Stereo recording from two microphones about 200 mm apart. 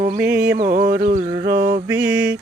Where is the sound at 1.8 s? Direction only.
10° right (ahead or behind).